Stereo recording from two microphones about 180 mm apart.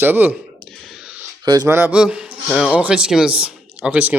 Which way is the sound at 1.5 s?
15° right (ahead or behind).